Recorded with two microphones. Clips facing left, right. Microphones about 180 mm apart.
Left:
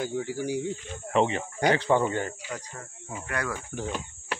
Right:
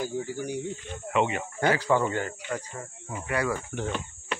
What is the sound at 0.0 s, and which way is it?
Speech, 75° left (ahead or behind).